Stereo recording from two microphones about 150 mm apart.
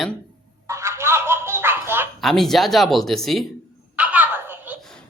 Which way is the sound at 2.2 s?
Centre (ahead or behind).